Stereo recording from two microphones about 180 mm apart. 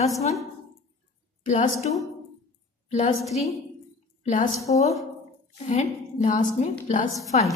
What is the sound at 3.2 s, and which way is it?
Speech, centre (ahead or behind).